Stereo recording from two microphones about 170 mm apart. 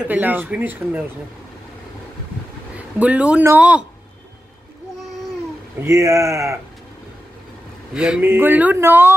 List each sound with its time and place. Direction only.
0.0 s speech: 10° right (ahead or behind)
3.0 s speech: 10° right (ahead or behind)
5.8 s speech: 15° right (ahead or behind)
7.9 s speech: 5° right (ahead or behind)